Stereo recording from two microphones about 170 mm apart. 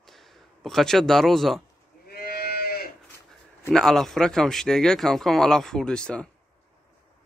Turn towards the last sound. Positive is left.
turn(degrees=5)  # may be behind; listen again after turning